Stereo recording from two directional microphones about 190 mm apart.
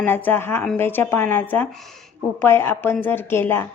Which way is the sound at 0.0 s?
10° left (ahead or behind).